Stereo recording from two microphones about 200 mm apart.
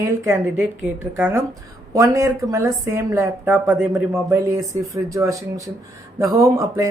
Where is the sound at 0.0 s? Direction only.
10° right (ahead or behind).